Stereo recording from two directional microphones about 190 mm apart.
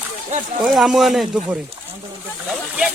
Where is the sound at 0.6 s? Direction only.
Centre (ahead or behind).